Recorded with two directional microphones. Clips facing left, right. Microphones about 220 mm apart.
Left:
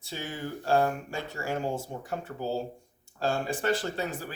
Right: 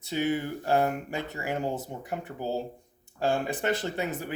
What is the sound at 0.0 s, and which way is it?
Speech, 20° right (ahead or behind).